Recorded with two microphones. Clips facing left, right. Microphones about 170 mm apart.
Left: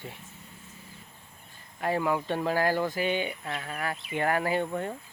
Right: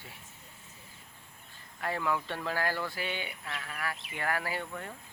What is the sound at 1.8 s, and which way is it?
Speech, 20° left (ahead or behind).